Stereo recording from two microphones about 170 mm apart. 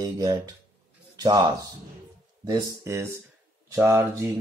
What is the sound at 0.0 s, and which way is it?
Speech, 20° right (ahead or behind).